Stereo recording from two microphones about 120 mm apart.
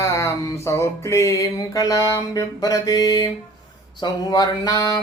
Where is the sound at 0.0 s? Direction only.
25° left (ahead or behind).